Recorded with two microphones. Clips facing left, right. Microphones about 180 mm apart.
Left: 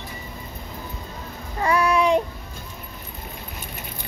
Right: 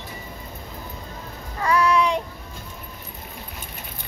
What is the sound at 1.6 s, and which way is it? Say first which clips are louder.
Child singing: even; 25° left (ahead or behind).